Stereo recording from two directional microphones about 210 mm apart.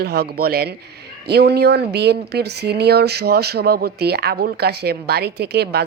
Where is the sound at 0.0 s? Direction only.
50° right (ahead or behind).